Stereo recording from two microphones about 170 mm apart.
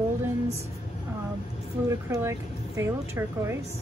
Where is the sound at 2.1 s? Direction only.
20° right (ahead or behind).